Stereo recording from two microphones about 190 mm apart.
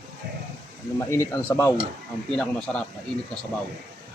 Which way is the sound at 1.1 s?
15° left (ahead or behind).